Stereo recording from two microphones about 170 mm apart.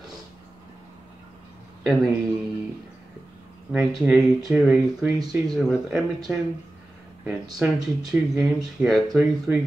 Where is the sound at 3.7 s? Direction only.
Centre (ahead or behind).